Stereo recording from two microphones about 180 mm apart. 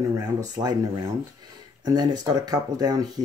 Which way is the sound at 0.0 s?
20° right (ahead or behind).